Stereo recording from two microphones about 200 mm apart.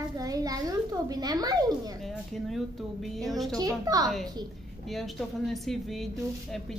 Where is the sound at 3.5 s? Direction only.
20° right (ahead or behind).